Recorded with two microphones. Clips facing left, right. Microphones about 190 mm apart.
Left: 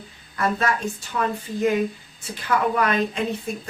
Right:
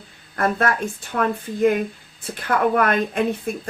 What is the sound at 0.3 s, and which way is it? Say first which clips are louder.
A woman's voice: right 2 dB; 55° right (ahead or behind).